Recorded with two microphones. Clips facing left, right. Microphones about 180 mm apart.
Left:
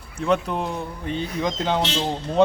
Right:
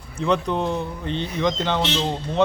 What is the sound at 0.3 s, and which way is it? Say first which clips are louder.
Speech: right 1 dB; 5° left (ahead or behind).